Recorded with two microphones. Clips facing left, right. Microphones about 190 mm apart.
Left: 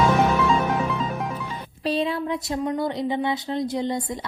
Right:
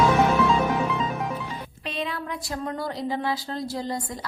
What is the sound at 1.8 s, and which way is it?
Speech, 30° left (ahead or behind).